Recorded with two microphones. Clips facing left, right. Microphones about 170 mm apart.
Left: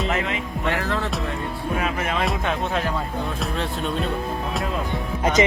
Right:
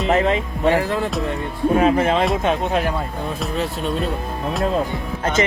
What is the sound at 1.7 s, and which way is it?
Speech, 30° right (ahead or behind).